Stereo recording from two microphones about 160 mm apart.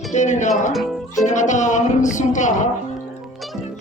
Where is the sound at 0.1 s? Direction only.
50° left (ahead or behind).